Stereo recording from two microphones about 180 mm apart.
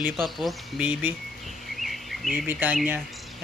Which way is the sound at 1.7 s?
Centre (ahead or behind).